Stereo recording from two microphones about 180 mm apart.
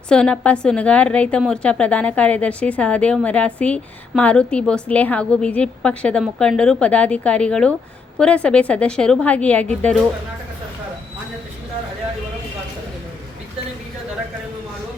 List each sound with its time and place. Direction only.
0.1 s a woman's voice: 5° left (ahead or behind)